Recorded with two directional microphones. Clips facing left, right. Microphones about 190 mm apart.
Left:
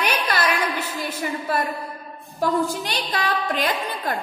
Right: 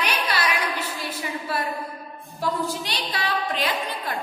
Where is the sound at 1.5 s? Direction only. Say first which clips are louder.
Left 2 dB; 50° left (ahead or behind).